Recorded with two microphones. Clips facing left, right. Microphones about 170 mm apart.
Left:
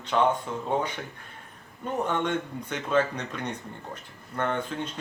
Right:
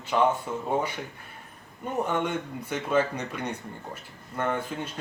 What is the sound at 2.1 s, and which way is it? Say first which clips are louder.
Speech: even; 10° right (ahead or behind).